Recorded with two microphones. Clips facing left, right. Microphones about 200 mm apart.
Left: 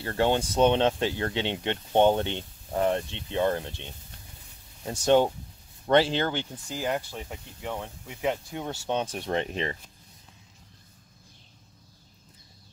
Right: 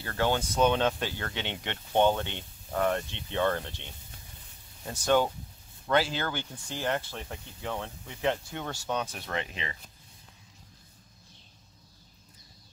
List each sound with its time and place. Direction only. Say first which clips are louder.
0.0 s speech: left 4 dB; 25° left (ahead or behind)
4.8 s speech: left 4 dB; 25° left (ahead or behind)
6.7 s speech: left 1 dB; 10° left (ahead or behind)
8.9 s speech: left 5 dB; 30° left (ahead or behind)